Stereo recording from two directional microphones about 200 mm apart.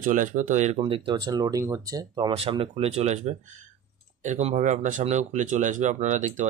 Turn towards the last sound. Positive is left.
turn(degrees=-35)  # may be behind; listen again after turning